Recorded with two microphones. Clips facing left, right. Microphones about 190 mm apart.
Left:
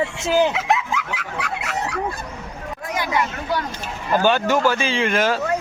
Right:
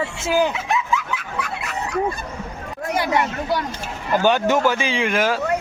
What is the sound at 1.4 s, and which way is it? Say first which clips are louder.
Chicken: left 2 dB; 90° left.